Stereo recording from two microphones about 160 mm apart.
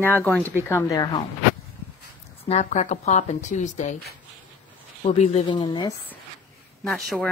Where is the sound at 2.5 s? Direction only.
50° left (ahead or behind).